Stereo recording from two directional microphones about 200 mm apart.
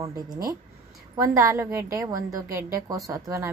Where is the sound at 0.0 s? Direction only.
20° right (ahead or behind).